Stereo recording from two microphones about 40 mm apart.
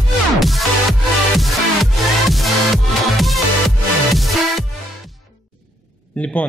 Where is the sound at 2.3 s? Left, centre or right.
Centre.